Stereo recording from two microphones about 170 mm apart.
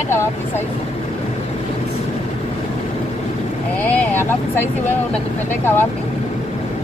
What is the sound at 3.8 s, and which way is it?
Speech, 10° left (ahead or behind).